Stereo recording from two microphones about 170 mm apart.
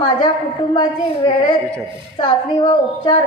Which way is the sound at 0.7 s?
25° left (ahead or behind).